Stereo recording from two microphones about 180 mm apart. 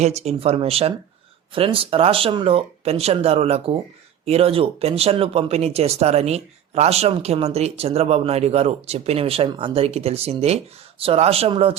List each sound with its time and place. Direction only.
0.0 s speech: 35° right (ahead or behind)